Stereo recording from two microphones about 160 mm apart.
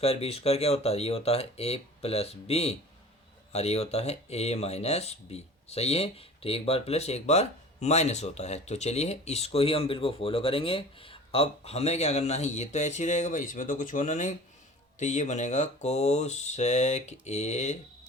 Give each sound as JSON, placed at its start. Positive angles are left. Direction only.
{"t": 0.0, "sound": "speech", "side_deg": 40}